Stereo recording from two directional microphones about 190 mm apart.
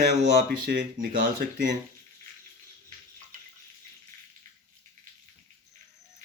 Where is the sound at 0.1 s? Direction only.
65° right (ahead or behind).